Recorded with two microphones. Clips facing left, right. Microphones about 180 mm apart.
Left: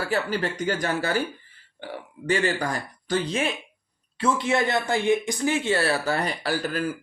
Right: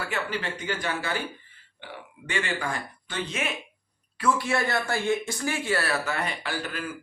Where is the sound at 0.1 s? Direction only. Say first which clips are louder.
Left 5 dB; 40° left (ahead or behind).